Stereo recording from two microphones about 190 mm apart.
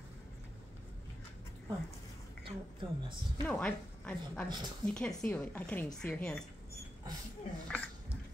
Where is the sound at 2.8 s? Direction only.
25° right (ahead or behind).